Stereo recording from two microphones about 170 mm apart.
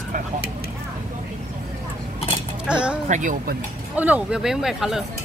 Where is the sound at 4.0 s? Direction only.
10° right (ahead or behind).